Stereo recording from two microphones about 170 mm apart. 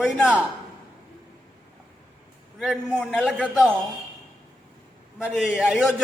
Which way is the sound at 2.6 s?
Centre (ahead or behind).